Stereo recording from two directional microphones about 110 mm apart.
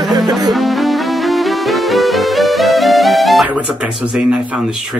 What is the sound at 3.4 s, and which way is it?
Speech, 10° right (ahead or behind).